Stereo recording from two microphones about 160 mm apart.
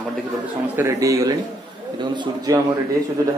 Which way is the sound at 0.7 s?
20° right (ahead or behind).